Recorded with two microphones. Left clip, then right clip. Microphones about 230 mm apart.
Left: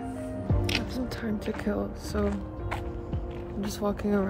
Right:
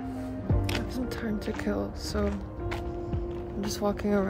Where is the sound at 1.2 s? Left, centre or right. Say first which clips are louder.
Left 1 dB; centre.